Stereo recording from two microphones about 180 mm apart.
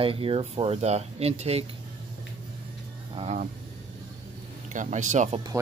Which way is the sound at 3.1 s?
30° right (ahead or behind).